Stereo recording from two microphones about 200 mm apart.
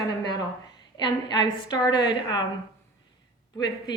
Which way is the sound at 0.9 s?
20° left (ahead or behind).